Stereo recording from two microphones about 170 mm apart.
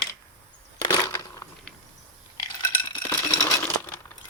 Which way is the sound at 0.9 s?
20° left (ahead or behind).